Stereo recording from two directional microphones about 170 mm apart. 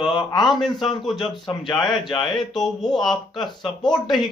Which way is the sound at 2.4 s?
5° left (ahead or behind).